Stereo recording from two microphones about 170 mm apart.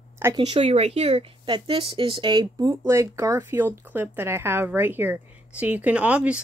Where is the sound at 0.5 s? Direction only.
35° right (ahead or behind).